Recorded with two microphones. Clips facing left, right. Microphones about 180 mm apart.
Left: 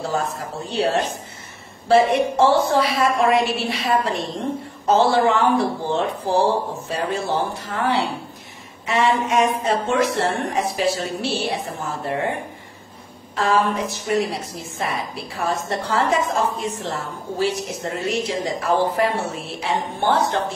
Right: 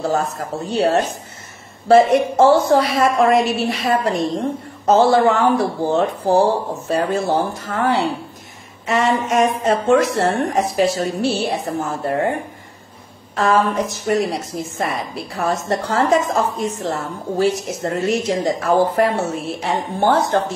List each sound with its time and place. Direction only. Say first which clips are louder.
0.1 s a woman's voice: right 4 dB; 45° right (ahead or behind)
13.4 s a woman's voice: right 3 dB; 45° right (ahead or behind)